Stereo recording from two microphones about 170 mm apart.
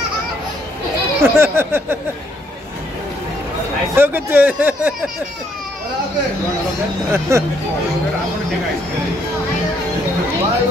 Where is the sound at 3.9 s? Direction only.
10° right (ahead or behind).